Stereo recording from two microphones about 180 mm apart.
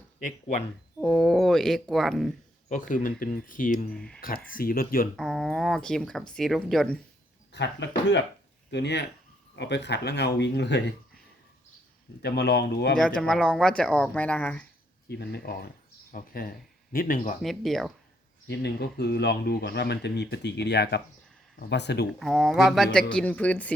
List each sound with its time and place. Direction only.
1.0 s speech: centre (ahead or behind)
2.9 s speech: 50° left (ahead or behind)
3.9 s speech: 5° left (ahead or behind)
4.2 s speech: 50° left (ahead or behind)
5.1 s speech: centre (ahead or behind)
7.5 s a man's voice: 80° left
12.2 s speech: 65° left (ahead or behind)
13.0 s speech: 5° left (ahead or behind)
15.2 s speech: 60° left (ahead or behind)
17.4 s speech: centre (ahead or behind)
18.4 s speech: 70° left (ahead or behind)
22.2 s speech: centre (ahead or behind)